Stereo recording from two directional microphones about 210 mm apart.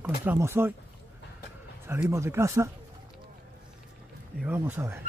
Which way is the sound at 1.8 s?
10° right (ahead or behind).